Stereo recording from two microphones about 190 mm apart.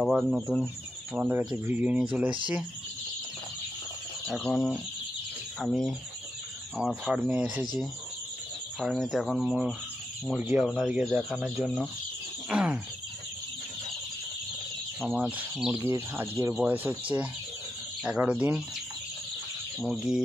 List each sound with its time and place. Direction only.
0.0 s speech: 5° right (ahead or behind)
4.3 s speech: centre (ahead or behind)
8.7 s speech: centre (ahead or behind)
15.0 s speech: 5° right (ahead or behind)
15.9 s speech: 15° right (ahead or behind)
18.0 s speech: 5° right (ahead or behind)
19.8 s speech: centre (ahead or behind)